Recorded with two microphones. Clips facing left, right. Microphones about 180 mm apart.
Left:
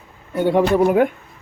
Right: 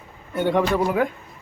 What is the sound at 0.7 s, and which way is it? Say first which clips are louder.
Speech: left 6 dB; 20° left (ahead or behind).